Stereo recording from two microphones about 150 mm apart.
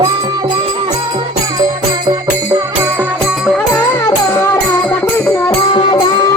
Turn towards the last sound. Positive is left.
turn(degrees=30)  # may be behind; listen again after turning